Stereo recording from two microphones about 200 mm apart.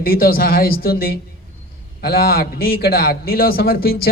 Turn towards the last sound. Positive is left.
turn(degrees=50)  # may be behind; listen again after turning